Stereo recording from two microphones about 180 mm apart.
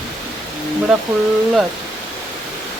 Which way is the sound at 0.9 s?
Centre (ahead or behind).